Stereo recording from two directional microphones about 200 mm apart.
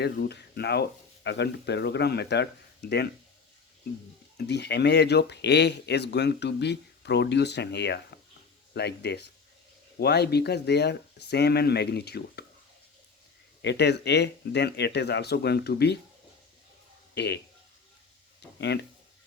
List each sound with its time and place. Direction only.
0.0 s speech: 55° left (ahead or behind)
4.4 s speech: 55° left (ahead or behind)
13.6 s speech: 60° left (ahead or behind)
17.2 s speech: 55° left (ahead or behind)
18.6 s speech: 55° left (ahead or behind)